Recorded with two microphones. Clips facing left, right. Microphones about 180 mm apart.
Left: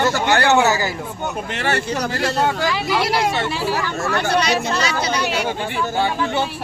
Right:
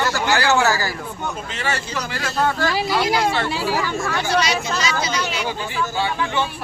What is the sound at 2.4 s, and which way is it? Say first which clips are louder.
Speech: right 1 dB; 15° left (ahead or behind).